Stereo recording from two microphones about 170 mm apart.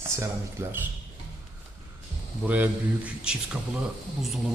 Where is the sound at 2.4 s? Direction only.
10° right (ahead or behind).